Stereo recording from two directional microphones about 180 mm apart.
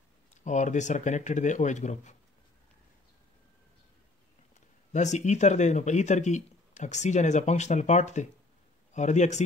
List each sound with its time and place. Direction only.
0.4 s speech: 40° left (ahead or behind)
4.9 s speech: 40° left (ahead or behind)